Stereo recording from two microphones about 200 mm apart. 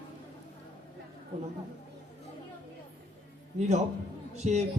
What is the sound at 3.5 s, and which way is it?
A man's voice, 35° right (ahead or behind).